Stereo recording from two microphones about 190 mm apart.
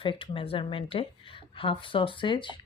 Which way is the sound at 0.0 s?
25° left (ahead or behind).